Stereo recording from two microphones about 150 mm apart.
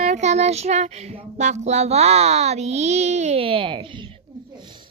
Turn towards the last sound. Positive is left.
turn(degrees=-35)  # may be behind; listen again after turning